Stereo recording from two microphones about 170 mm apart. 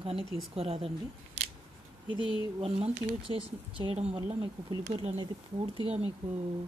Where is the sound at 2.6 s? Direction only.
35° right (ahead or behind).